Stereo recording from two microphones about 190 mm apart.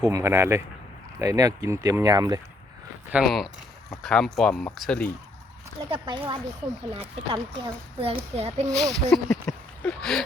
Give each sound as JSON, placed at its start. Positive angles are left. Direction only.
{"t": 0.0, "sound": "speech", "side_deg": -15}
{"t": 3.1, "sound": "speech", "side_deg": 0}
{"t": 5.9, "sound": "a child's voice", "side_deg": -25}
{"t": 8.7, "sound": "speech", "side_deg": 0}